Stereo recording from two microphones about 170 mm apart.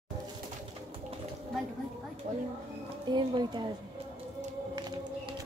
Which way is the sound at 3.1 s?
25° right (ahead or behind).